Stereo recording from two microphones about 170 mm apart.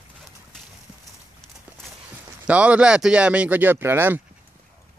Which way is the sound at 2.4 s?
5° right (ahead or behind).